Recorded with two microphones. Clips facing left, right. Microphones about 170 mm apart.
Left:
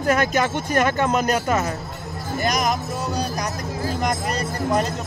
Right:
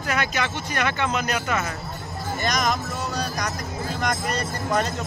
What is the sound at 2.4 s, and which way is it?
Speech, 10° left (ahead or behind).